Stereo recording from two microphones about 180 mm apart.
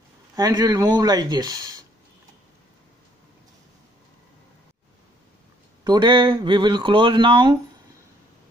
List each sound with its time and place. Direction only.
0.4 s speech: 20° right (ahead or behind)
5.9 s speech: 25° right (ahead or behind)